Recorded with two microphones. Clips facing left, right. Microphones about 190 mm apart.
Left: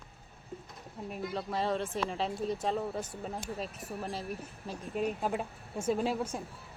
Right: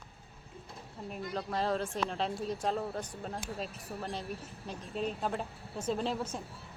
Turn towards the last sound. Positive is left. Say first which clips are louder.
# left 3 dB
turn(degrees=10)  # may be behind; listen again after turning